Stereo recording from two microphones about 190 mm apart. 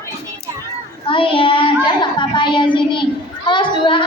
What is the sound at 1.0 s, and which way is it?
Child singing, 25° left (ahead or behind).